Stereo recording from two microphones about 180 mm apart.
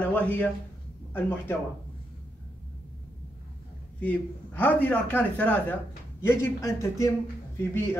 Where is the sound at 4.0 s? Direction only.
10° left (ahead or behind).